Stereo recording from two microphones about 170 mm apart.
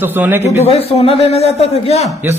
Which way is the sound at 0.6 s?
35° left (ahead or behind).